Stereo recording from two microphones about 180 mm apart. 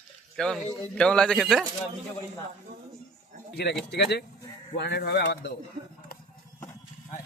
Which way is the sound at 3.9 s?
70° left (ahead or behind).